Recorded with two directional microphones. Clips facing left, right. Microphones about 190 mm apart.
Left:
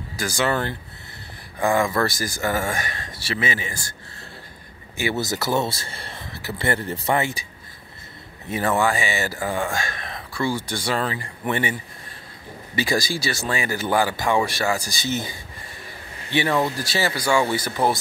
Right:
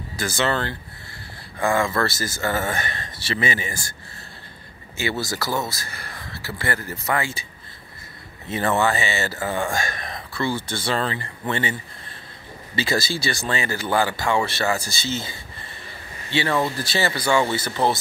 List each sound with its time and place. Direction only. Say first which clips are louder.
0.1 s speech: even; 10° left (ahead or behind)
4.9 s speech: left 2 dB; 15° left (ahead or behind)
8.5 s speech: even; 10° left (ahead or behind)
10.3 s speech: left 1 dB; 10° left (ahead or behind)
12.7 s speech: left 1 dB; 15° left (ahead or behind)